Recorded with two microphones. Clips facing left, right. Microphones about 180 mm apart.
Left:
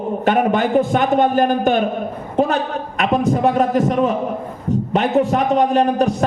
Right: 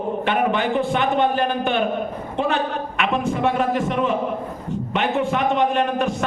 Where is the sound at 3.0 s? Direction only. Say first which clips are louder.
Left 5 dB; 40° left (ahead or behind).